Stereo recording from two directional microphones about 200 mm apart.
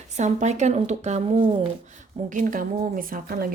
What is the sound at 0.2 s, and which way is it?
A woman's voice, 35° right (ahead or behind).